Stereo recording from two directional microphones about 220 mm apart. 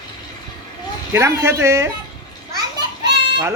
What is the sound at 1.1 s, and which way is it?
Speech, 10° right (ahead or behind).